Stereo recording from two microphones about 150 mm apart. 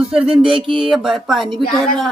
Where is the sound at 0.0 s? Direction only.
5° right (ahead or behind).